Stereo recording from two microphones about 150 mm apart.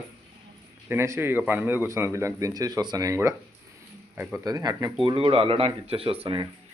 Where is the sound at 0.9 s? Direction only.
15° right (ahead or behind).